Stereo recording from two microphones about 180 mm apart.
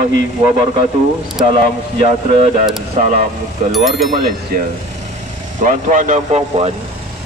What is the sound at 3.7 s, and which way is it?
Speech, centre (ahead or behind).